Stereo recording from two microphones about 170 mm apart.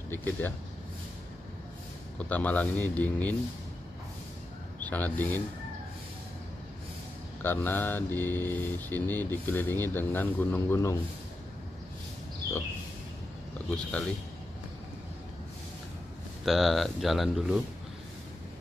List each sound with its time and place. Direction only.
0.1 s mantra: 10° left (ahead or behind)
2.1 s mantra: 10° left (ahead or behind)
4.8 s mantra: 10° left (ahead or behind)
7.4 s mantra: 10° left (ahead or behind)
16.4 s speech: centre (ahead or behind)